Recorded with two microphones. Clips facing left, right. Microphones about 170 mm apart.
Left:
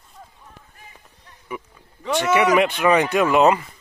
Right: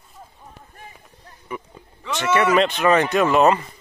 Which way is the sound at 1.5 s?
10° left (ahead or behind).